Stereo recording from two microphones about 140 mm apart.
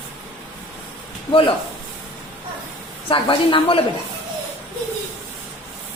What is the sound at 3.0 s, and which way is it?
Speech, 40° left (ahead or behind).